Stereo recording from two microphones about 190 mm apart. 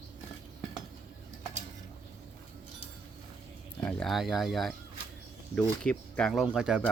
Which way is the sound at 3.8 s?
Centre (ahead or behind).